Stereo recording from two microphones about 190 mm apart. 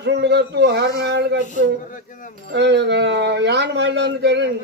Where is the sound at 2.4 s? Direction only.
65° right (ahead or behind).